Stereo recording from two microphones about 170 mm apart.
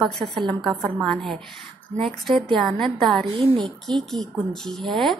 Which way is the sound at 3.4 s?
25° right (ahead or behind).